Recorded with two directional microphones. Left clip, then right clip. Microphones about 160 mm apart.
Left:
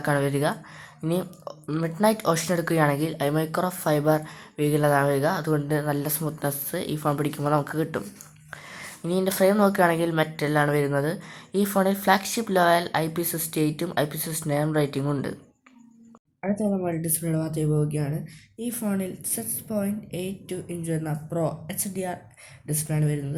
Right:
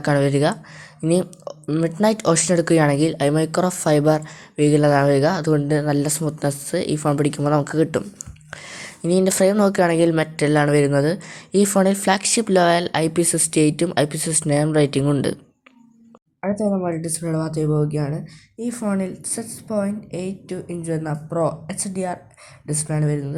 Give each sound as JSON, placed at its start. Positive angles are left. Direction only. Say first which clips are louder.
{"t": 0.0, "sound": "speech", "louder": "right 6 dB", "side_deg": -35}
{"t": 16.4, "sound": "a woman's voice", "louder": "right 5 dB", "side_deg": -15}